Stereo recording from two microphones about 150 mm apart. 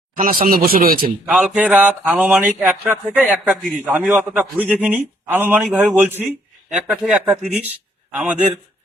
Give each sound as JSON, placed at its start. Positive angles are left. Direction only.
{"t": 0.2, "sound": "speech", "side_deg": -65}
{"t": 1.3, "sound": "a man's voice", "side_deg": -10}